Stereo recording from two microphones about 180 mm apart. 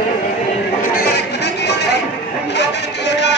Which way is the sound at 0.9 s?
65° left (ahead or behind).